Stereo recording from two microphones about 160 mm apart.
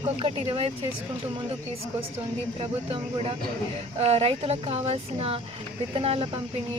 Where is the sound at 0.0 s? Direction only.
35° right (ahead or behind).